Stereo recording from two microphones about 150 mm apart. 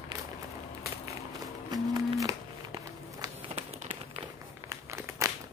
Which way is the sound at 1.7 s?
25° right (ahead or behind).